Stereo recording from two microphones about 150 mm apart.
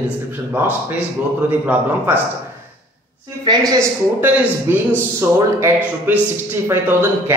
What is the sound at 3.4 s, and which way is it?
Speech, 25° right (ahead or behind).